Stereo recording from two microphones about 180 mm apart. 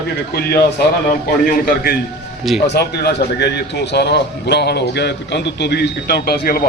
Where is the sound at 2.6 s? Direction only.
65° left (ahead or behind).